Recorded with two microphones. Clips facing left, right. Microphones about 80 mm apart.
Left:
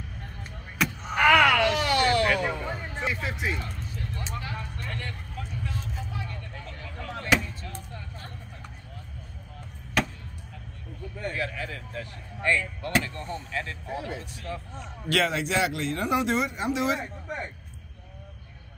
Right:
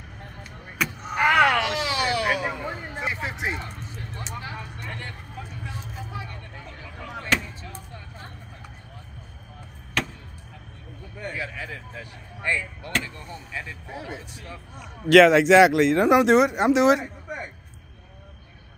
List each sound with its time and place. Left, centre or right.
1.2 s a sound: right
1.8 s a sound: centre
3.1 s vehicle: right
10.0 s chop: centre
11.1 s arrow: centre
13.0 s speech: centre
13.9 s speech: right
14.4 s speech: centre
15.0 s speech: right
17.0 s a sound: centre